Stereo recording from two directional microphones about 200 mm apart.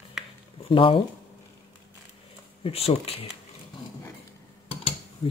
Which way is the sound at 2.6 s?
30° left (ahead or behind).